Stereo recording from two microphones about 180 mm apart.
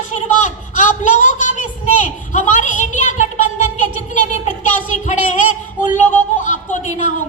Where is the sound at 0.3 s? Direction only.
45° left (ahead or behind).